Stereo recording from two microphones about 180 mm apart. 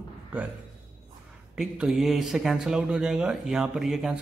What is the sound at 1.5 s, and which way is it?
Speech, 5° right (ahead or behind).